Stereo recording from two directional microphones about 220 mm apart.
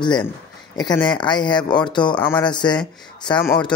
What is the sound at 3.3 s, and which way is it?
Speech, 20° left (ahead or behind).